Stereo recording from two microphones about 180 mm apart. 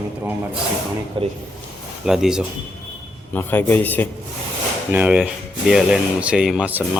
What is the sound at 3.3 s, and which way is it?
Speech, 10° left (ahead or behind).